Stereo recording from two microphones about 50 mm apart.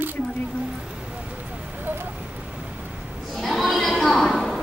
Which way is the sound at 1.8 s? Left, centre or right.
Right.